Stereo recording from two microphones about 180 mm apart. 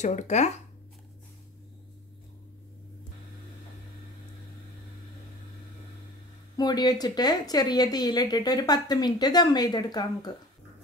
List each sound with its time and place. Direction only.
0.0 s speech: 40° left (ahead or behind)
6.5 s speech: 20° left (ahead or behind)